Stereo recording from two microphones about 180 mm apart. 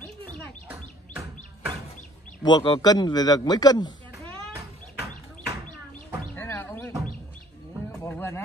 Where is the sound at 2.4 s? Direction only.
25° left (ahead or behind).